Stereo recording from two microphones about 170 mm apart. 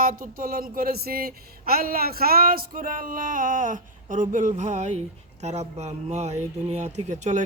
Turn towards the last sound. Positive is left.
turn(degrees=-45)  # may be behind; listen again after turning